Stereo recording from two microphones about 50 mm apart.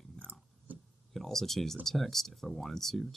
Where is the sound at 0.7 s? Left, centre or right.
Right.